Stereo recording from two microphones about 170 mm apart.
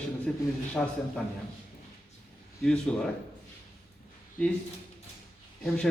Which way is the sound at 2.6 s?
5° left (ahead or behind).